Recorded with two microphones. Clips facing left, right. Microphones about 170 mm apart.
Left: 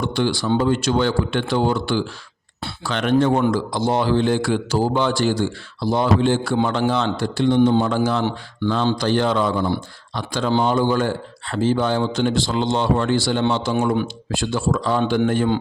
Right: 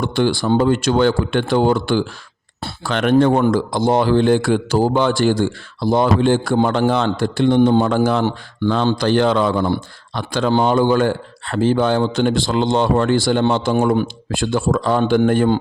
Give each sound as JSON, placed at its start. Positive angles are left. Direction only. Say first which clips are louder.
{"t": 0.0, "sound": "speech", "louder": "right 3 dB", "side_deg": -55}